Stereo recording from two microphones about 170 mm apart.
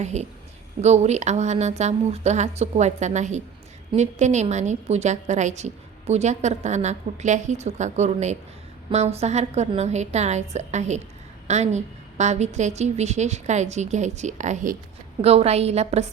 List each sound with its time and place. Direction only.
0.0 s a woman's voice: 40° right (ahead or behind)
15.2 s speech: 35° right (ahead or behind)